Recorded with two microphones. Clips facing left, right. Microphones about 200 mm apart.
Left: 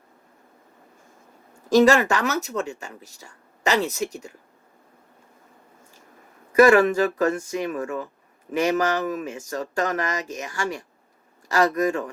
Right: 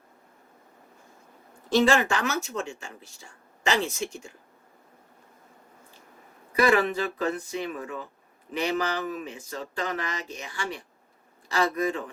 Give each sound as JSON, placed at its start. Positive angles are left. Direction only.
{"t": 1.7, "sound": "speech", "side_deg": 40}
{"t": 6.5, "sound": "speech", "side_deg": 45}